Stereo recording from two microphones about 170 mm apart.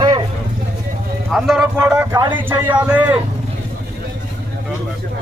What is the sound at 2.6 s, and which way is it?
Speech, 10° right (ahead or behind).